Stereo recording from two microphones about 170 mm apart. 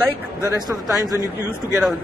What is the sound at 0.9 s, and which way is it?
Speech, 20° left (ahead or behind).